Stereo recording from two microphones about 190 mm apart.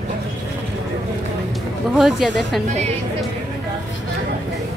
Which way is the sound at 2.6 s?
35° right (ahead or behind).